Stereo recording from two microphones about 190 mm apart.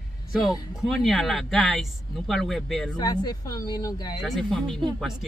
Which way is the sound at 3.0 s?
20° left (ahead or behind).